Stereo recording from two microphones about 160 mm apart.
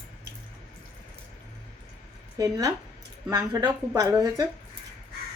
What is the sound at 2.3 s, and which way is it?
Speech, 20° right (ahead or behind).